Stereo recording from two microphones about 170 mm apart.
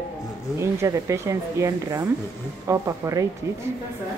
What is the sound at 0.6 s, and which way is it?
Speech, 15° right (ahead or behind).